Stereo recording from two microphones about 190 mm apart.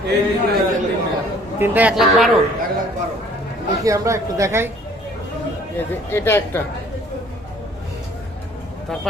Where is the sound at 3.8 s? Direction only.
15° right (ahead or behind).